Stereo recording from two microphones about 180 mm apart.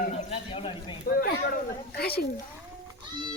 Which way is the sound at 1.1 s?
50° left (ahead or behind).